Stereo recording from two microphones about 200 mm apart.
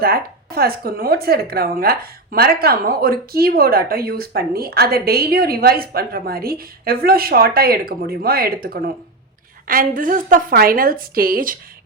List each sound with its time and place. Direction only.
0.0 s speech: 50° right (ahead or behind)